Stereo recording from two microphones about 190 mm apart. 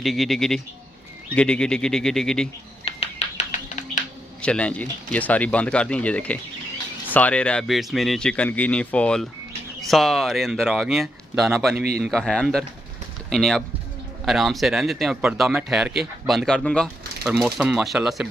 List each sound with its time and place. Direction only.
0.0 s speech: centre (ahead or behind)
2.8 s a sound: 30° left (ahead or behind)
4.4 s speech: 5° left (ahead or behind)